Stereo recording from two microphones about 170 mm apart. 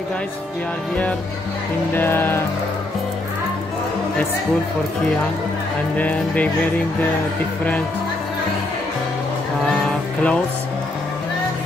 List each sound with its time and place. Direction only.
2.0 s speech: 15° left (ahead or behind)
5.9 s speech: 10° left (ahead or behind)
9.7 s music: 5° left (ahead or behind)